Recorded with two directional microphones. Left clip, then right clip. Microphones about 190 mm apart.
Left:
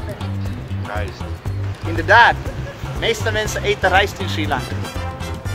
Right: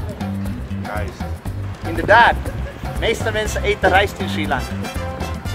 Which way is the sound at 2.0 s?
20° right (ahead or behind).